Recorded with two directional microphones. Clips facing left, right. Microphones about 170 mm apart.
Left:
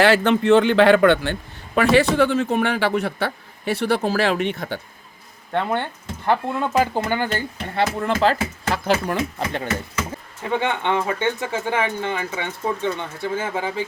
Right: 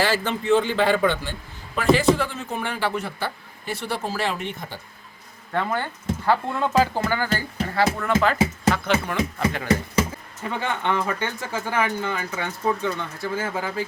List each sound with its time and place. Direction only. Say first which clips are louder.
0.0 s a man's voice: left 7 dB; 70° left (ahead or behind)
5.5 s speech: left 3 dB; 25° left (ahead or behind)
10.6 s speech: left 1 dB; 20° left (ahead or behind)